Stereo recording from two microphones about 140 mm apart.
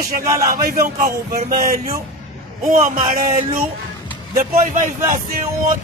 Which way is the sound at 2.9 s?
85° right.